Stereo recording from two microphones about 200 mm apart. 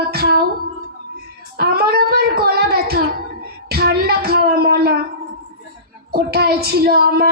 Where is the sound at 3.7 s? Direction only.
50° right (ahead or behind).